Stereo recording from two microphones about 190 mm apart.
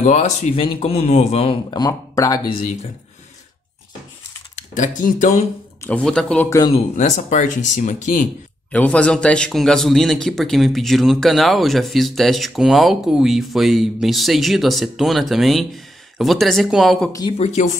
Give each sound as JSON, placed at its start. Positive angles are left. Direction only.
{"t": 0.0, "sound": "speech", "side_deg": 40}
{"t": 0.6, "sound": "a man's voice", "side_deg": 25}
{"t": 4.7, "sound": "speech", "side_deg": 45}
{"t": 5.9, "sound": "speech", "side_deg": 5}
{"t": 6.7, "sound": "speech", "side_deg": 40}
{"t": 8.7, "sound": "a man's voice", "side_deg": 5}